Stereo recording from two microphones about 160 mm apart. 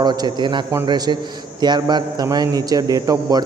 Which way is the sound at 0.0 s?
25° right (ahead or behind).